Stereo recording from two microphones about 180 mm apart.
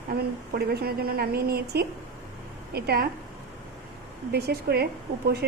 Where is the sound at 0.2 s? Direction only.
60° right (ahead or behind).